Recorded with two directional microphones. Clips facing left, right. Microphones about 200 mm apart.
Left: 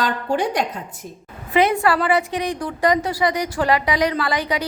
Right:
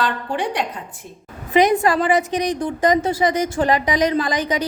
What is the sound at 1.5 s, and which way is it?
A woman's voice, 20° right (ahead or behind).